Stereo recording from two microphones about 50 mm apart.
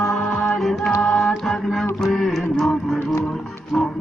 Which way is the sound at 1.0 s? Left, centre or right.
Centre.